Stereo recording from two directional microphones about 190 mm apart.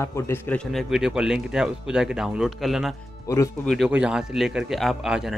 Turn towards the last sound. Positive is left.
turn(degrees=0)  # may be behind; listen again after turning